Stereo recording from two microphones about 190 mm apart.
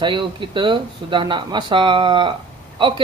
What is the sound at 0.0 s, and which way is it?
Speech, 25° right (ahead or behind).